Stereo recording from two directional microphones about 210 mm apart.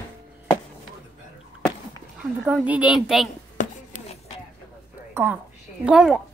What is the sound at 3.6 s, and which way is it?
Writing, 35° left (ahead or behind).